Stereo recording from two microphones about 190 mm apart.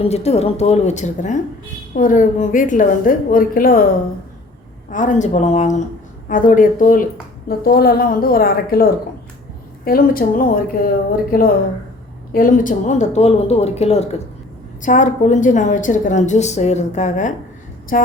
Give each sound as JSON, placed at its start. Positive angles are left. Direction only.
{"t": 0.0, "sound": "a woman's voice", "side_deg": 35}
{"t": 4.9, "sound": "a woman's voice", "side_deg": 40}